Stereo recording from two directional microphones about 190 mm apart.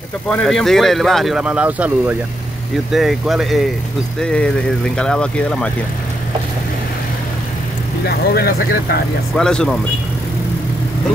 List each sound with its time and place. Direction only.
0.3 s speech: 5° left (ahead or behind)
8.0 s speech: 55° left (ahead or behind)
9.3 s speech: 5° left (ahead or behind)